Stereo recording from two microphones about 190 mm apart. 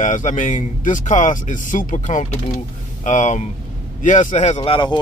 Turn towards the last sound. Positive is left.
turn(degrees=25)  # may be behind; listen again after turning